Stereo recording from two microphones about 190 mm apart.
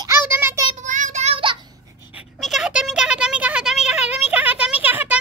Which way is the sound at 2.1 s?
5° right (ahead or behind).